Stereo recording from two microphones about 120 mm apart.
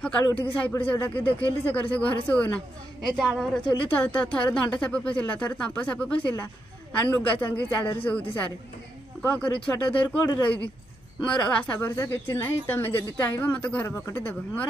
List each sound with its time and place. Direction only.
0.0 s speech: 10° left (ahead or behind)
12.0 s speech: 20° left (ahead or behind)